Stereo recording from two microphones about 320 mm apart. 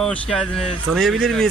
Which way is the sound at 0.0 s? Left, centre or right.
Centre.